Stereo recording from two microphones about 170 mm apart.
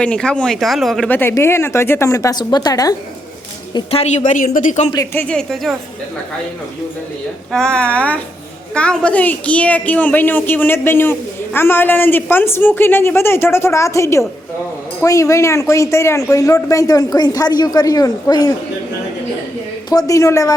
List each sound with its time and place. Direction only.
0.0 s a woman's voice: 5° left (ahead or behind); by 2.9 s 20° left (ahead or behind)
3.8 s speech: 35° left (ahead or behind)
5.1 s speech: 5° left (ahead or behind)
7.5 s a woman's voice: 5° left (ahead or behind); by 18.5 s 20° left (ahead or behind)
19.9 s speech: 20° left (ahead or behind)